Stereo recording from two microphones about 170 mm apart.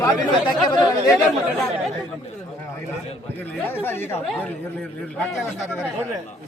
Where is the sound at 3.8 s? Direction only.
15° left (ahead or behind).